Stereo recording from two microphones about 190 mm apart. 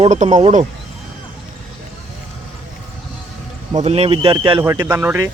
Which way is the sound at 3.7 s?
35° right (ahead or behind).